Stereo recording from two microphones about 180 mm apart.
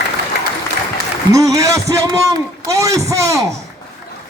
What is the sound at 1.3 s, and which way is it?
Speech, 20° right (ahead or behind).